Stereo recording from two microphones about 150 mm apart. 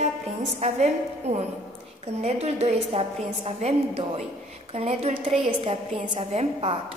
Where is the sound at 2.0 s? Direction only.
45° right (ahead or behind).